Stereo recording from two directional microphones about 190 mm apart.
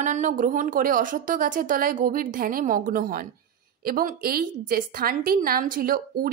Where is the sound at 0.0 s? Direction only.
40° right (ahead or behind).